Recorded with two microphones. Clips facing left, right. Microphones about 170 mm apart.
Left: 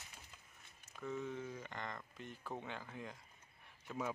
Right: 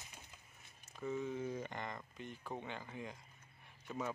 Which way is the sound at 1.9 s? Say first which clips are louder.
Right 2 dB; 5° right (ahead or behind).